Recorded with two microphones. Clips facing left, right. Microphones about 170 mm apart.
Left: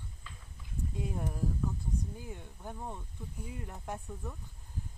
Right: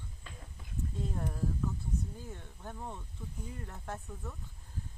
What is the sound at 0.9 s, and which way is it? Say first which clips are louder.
Speech: left 1 dB; 10° left (ahead or behind).